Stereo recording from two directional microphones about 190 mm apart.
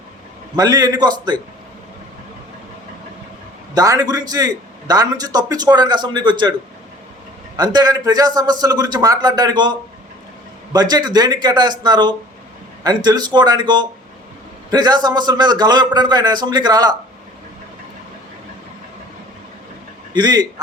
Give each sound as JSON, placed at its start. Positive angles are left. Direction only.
{"t": 0.5, "sound": "a man's voice", "side_deg": -20}
{"t": 3.8, "sound": "a man's voice", "side_deg": -20}
{"t": 7.5, "sound": "a man's voice", "side_deg": -20}
{"t": 20.1, "sound": "a man's voice", "side_deg": -20}